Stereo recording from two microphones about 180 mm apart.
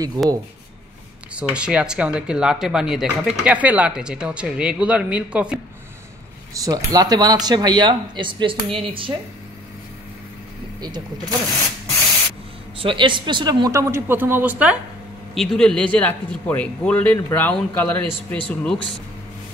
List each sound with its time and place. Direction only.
0.2 s speech: 20° right (ahead or behind)
1.3 s speech: 5° right (ahead or behind)
6.5 s speech: 20° right (ahead or behind)
10.8 s speech: 20° right (ahead or behind)
12.8 s speech: 25° right (ahead or behind); by 14.8 s 10° right (ahead or behind)
15.3 s speech: 5° left (ahead or behind)